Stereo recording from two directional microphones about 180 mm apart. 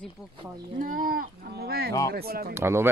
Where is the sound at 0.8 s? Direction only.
50° right (ahead or behind).